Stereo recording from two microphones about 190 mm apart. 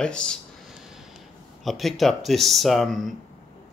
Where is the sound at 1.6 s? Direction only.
Centre (ahead or behind).